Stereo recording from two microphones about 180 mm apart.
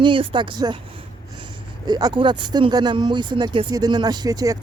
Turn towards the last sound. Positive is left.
turn(degrees=-20)  # may be behind; listen again after turning